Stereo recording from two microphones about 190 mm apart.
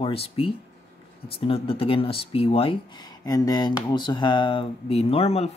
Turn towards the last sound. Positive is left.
turn(degrees=30)  # may be behind; listen again after turning